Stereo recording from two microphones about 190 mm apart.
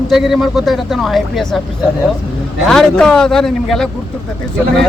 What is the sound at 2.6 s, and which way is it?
A man's voice, 5° left (ahead or behind).